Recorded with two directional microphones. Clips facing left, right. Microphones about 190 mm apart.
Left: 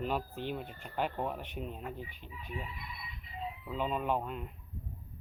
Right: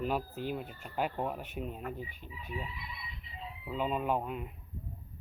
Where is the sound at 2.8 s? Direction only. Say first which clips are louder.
Even; 50° left (ahead or behind).